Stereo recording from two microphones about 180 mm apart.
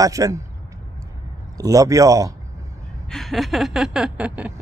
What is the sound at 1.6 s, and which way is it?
Speech, 20° right (ahead or behind).